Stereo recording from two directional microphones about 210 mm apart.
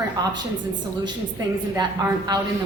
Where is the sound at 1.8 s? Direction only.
20° right (ahead or behind).